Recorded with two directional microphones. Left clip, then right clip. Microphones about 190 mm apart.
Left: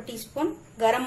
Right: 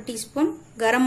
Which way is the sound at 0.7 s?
50° right (ahead or behind).